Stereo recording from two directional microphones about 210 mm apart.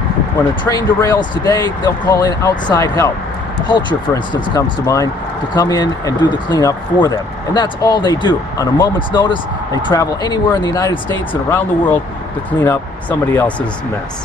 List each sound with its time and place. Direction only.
0.7 s speech: 15° left (ahead or behind)
13.3 s speech: 10° left (ahead or behind)